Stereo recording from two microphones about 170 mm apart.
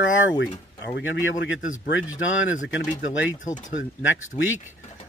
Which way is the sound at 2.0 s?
5° right (ahead or behind).